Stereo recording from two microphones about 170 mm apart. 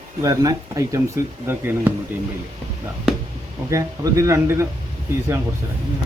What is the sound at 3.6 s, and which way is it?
Speech, 20° right (ahead or behind).